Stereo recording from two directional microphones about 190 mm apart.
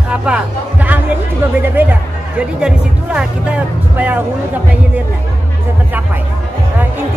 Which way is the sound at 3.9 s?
10° right (ahead or behind).